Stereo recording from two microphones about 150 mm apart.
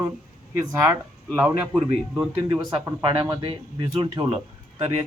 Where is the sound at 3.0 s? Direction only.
35° right (ahead or behind).